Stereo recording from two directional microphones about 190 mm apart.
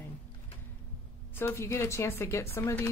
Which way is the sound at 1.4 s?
15° left (ahead or behind).